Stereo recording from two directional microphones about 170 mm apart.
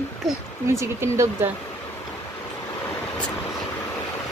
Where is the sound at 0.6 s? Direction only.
15° right (ahead or behind).